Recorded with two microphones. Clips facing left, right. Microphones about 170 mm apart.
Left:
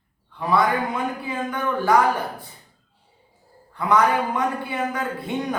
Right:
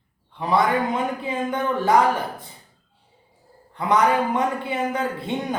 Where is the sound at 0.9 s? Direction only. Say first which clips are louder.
Right 2 dB; 25° right (ahead or behind).